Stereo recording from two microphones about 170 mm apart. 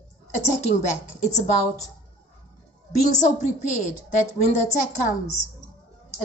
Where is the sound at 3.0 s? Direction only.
45° left (ahead or behind).